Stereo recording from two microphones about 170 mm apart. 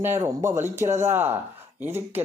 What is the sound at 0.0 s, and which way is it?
Speech, 15° right (ahead or behind).